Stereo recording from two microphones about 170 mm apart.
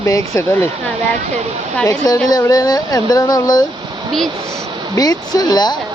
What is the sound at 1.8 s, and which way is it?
Speech, 20° left (ahead or behind).